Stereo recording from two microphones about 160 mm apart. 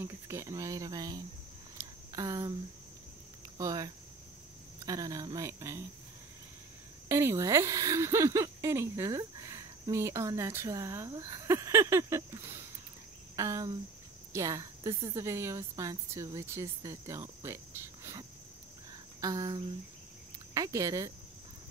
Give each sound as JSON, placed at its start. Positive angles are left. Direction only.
{"t": 0.0, "sound": "a woman's voice", "side_deg": -20}
{"t": 1.8, "sound": "a sound", "side_deg": -20}
{"t": 3.5, "sound": "a woman's voice", "side_deg": -20}
{"t": 7.1, "sound": "a woman's voice", "side_deg": -15}
{"t": 19.2, "sound": "a woman's voice", "side_deg": -25}